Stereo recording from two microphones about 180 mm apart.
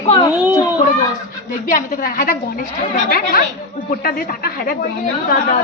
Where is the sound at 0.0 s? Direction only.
30° left (ahead or behind).